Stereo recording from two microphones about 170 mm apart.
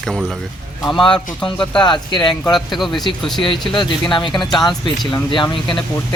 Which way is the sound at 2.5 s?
Centre (ahead or behind).